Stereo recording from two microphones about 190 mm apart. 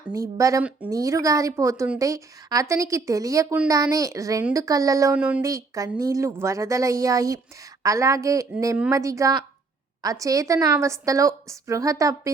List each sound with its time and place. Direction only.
0.1 s speech: 15° right (ahead or behind)